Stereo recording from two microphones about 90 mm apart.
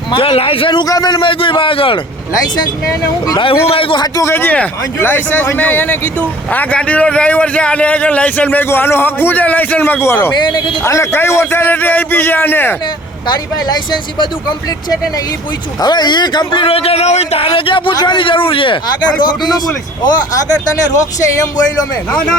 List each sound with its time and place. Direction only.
0.1 s a man's voice: 80° left
0.9 s a man's voice: 50° left (ahead or behind); by 2.0 s 85° left
2.6 s speech: 45° left (ahead or behind)
3.4 s a man's voice: 90° left
4.0 s speech: 40° left (ahead or behind)
4.3 s a man's voice: 20° left (ahead or behind)
10.3 s speech: 60° left (ahead or behind)
10.8 s a man's voice: 30° left (ahead or behind)
13.2 s speech: 50° left (ahead or behind)
15.8 s a man's voice: 55° left (ahead or behind); by 17.9 s 70° left (ahead or behind)
17.9 s a man's voice: 55° left (ahead or behind); by 18.8 s 75° left (ahead or behind)
19.2 s speech: 50° left (ahead or behind)